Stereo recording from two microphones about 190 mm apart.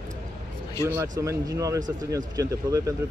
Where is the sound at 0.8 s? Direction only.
15° right (ahead or behind).